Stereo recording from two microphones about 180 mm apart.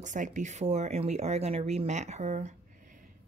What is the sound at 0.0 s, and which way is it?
Speech, 45° right (ahead or behind).